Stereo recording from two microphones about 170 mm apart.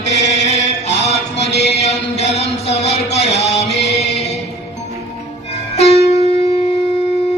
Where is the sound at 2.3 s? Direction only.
40° left (ahead or behind).